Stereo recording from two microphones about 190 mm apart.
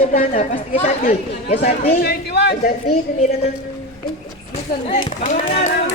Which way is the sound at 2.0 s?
60° left (ahead or behind).